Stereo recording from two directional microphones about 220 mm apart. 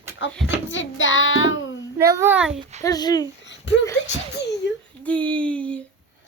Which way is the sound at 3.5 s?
55° left (ahead or behind).